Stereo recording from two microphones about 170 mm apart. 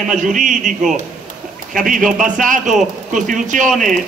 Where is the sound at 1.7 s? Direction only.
50° right (ahead or behind).